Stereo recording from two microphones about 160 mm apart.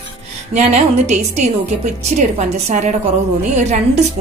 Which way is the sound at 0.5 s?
45° right (ahead or behind).